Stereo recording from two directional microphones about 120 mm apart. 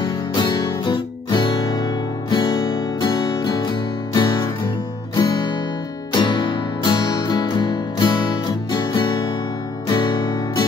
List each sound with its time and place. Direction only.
0.0 s guitar: 35° left (ahead or behind)
5.1 s music: 40° left (ahead or behind)